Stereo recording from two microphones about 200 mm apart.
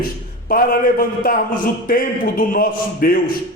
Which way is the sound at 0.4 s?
45° left (ahead or behind).